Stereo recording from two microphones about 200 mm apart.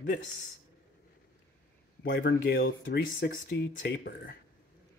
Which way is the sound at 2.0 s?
55° left (ahead or behind).